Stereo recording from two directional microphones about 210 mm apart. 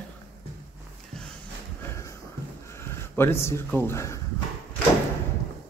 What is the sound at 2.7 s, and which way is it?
Speech, 10° left (ahead or behind).